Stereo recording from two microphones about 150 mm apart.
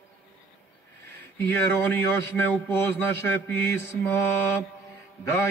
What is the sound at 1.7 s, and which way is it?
Mantra, 15° left (ahead or behind).